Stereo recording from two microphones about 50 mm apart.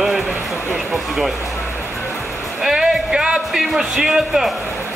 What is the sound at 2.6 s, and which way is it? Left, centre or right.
A man's voice, centre.